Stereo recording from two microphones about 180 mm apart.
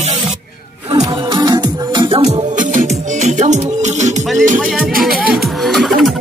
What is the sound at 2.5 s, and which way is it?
Music, 45° right (ahead or behind).